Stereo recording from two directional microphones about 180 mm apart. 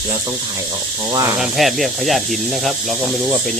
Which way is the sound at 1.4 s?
Centre (ahead or behind).